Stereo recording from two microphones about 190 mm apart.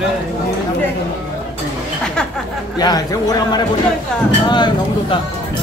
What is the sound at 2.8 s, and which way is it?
Speech, 20° left (ahead or behind).